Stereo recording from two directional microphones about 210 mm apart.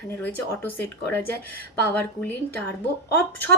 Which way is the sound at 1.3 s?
50° right (ahead or behind).